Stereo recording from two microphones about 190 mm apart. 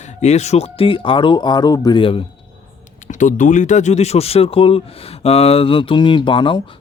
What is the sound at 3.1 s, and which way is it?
Speech, 40° left (ahead or behind).